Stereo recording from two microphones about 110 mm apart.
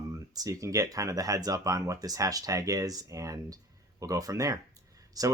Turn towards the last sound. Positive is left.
turn(degrees=-35)  # may be behind; listen again after turning